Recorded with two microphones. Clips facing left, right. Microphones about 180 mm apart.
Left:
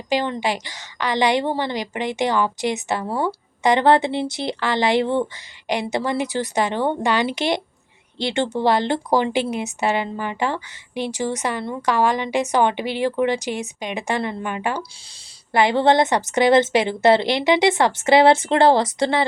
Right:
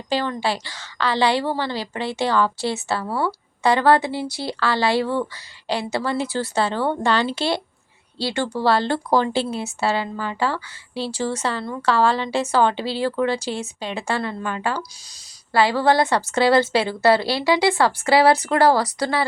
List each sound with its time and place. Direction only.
0.1 s a woman's voice: 15° left (ahead or behind)